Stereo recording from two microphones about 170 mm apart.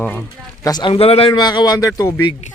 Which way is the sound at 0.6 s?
25° left (ahead or behind).